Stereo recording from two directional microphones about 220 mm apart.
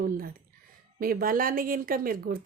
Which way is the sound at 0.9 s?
40° right (ahead or behind).